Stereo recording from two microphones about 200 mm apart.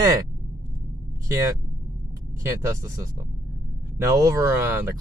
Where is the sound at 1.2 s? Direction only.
15° right (ahead or behind).